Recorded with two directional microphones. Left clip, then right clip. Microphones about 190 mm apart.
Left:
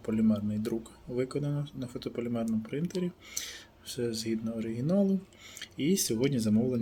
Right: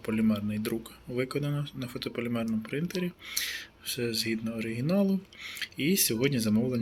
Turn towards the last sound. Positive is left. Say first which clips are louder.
# even
turn(degrees=5)  # may be behind; listen again after turning